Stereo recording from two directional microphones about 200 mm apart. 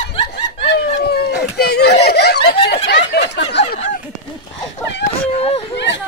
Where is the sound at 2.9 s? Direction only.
60° left (ahead or behind).